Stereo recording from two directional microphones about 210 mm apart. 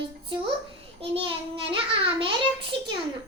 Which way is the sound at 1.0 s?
25° right (ahead or behind).